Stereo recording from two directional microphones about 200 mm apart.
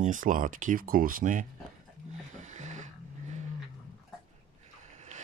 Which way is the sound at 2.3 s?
35° right (ahead or behind).